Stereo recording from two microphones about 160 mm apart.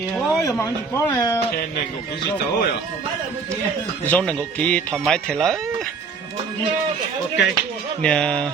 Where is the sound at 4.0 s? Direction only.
10° left (ahead or behind).